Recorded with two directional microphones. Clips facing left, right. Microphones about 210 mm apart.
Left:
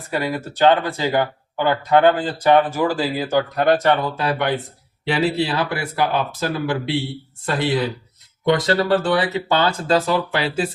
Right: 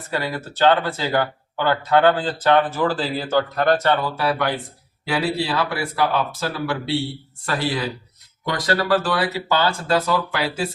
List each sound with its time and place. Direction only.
0.1 s speech: 15° left (ahead or behind)